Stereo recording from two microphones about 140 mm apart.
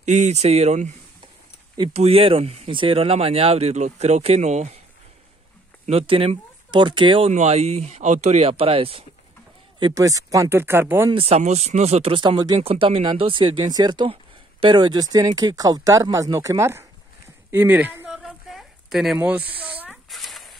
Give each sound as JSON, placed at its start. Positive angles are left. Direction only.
{"t": 0.0, "sound": "speech", "side_deg": -60}
{"t": 2.0, "sound": "speech", "side_deg": -45}
{"t": 5.9, "sound": "speech", "side_deg": -40}
{"t": 7.3, "sound": "speech", "side_deg": -50}
{"t": 9.8, "sound": "speech", "side_deg": -30}
{"t": 11.1, "sound": "speech", "side_deg": -45}
{"t": 12.5, "sound": "speech", "side_deg": -45}
{"t": 18.1, "sound": "a sound", "side_deg": 0}